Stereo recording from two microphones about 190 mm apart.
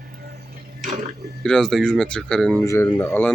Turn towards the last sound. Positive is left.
turn(degrees=10)  # may be behind; listen again after turning